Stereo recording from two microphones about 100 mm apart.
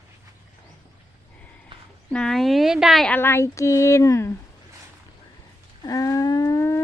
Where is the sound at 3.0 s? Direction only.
20° left (ahead or behind).